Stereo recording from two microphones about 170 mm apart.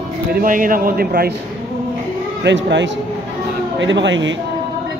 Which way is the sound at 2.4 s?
90° right.